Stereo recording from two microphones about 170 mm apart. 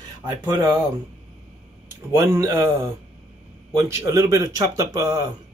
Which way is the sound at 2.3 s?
15° right (ahead or behind).